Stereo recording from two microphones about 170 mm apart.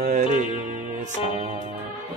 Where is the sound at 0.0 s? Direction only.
45° right (ahead or behind).